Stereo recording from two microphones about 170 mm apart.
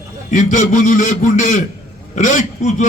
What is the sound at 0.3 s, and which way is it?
A man's voice, 50° left (ahead or behind).